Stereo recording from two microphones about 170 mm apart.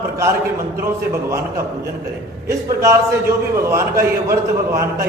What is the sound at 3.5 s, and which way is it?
A man's voice, 15° right (ahead or behind).